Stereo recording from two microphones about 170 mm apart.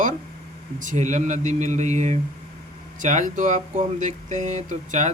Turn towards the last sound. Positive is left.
turn(degrees=-45)  # may be behind; listen again after turning